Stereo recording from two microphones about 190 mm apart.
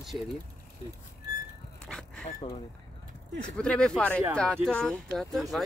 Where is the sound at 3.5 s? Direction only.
5° left (ahead or behind).